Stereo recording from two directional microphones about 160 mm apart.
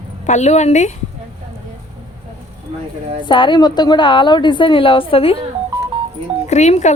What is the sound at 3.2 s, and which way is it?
A woman's voice, 30° left (ahead or behind).